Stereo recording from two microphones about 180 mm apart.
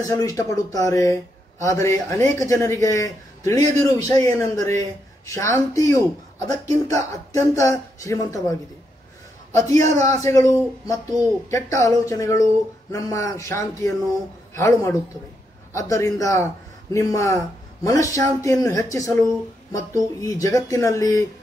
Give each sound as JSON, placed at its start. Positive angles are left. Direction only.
{"t": 0.0, "sound": "speech", "side_deg": 20}
{"t": 9.5, "sound": "speech", "side_deg": 15}
{"t": 20.2, "sound": "speech", "side_deg": 20}